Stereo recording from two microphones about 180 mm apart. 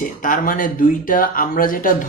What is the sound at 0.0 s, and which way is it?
Speech, 50° left (ahead or behind).